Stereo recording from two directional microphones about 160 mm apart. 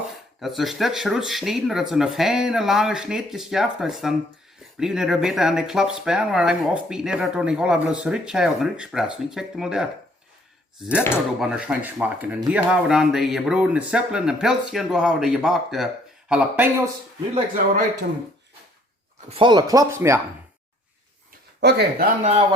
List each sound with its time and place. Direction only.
0.3 s speech: centre (ahead or behind)
19.3 s speech: 30° right (ahead or behind); by 20.1 s 15° right (ahead or behind)
21.6 s speech: 90° right
22.2 s speech: 45° right (ahead or behind)